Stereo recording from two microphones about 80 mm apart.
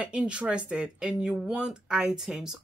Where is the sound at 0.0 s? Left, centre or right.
Centre.